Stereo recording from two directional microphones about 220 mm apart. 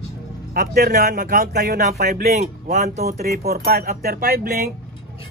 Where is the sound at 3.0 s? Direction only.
45° right (ahead or behind).